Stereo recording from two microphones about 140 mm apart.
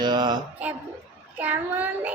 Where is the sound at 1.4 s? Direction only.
10° right (ahead or behind).